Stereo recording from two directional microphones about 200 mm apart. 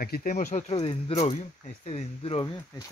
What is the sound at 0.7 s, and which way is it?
Speech, 25° left (ahead or behind).